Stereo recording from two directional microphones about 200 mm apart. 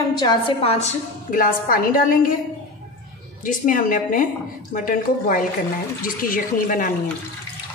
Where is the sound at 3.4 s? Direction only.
40° left (ahead or behind).